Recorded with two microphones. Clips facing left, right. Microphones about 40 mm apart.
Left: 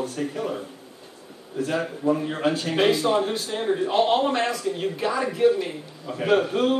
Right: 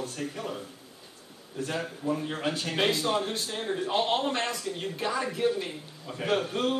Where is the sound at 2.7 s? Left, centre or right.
Centre.